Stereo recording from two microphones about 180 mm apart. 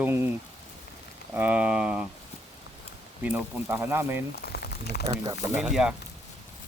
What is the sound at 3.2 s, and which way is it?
Speech, 10° right (ahead or behind).